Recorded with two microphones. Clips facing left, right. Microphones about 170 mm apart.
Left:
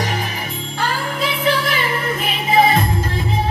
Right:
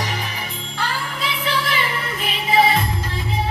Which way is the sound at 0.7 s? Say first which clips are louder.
Left 4 dB; 45° left (ahead or behind).